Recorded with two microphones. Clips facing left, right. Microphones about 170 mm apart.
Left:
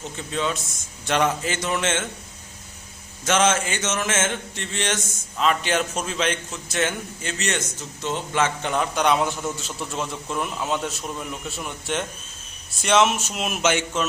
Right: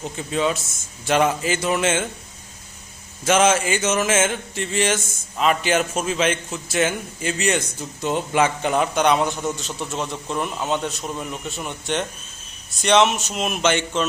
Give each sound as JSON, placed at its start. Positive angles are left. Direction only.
{"t": 0.2, "sound": "a man's voice", "side_deg": -5}
{"t": 3.2, "sound": "a man's voice", "side_deg": -10}